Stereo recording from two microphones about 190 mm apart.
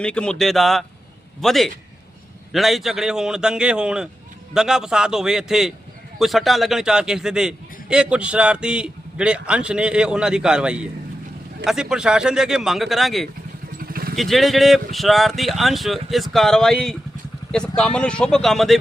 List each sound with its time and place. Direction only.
0.0 s a man's voice: 5° left (ahead or behind)
13.7 s vehicle: 50° right (ahead or behind)
14.2 s a man's voice: centre (ahead or behind)